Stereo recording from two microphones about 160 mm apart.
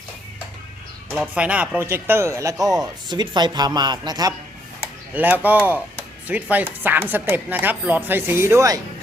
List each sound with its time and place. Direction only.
1.3 s speech: 10° right (ahead or behind)
2.6 s speech: centre (ahead or behind)
2.8 s speech: 25° right (ahead or behind)
5.1 s speech: 10° right (ahead or behind)